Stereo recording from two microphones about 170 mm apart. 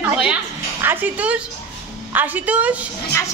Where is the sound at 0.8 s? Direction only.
10° right (ahead or behind).